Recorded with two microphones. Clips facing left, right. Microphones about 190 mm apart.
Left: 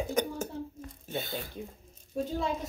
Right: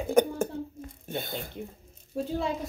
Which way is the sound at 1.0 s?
50° right (ahead or behind).